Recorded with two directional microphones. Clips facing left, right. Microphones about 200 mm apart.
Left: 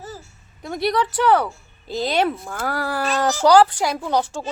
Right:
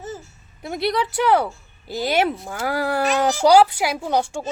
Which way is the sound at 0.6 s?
10° right (ahead or behind).